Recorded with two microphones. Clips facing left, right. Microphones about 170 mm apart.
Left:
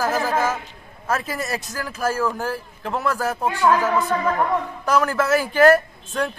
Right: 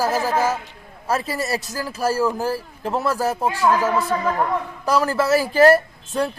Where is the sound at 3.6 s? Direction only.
15° right (ahead or behind).